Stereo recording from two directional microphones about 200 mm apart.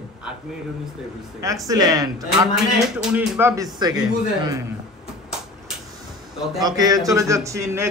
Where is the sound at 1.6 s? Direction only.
15° right (ahead or behind).